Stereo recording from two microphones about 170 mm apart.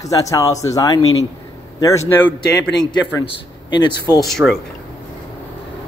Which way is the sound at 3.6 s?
25° left (ahead or behind).